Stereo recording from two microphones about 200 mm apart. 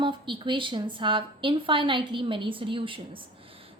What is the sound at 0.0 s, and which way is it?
A woman's voice, 25° right (ahead or behind).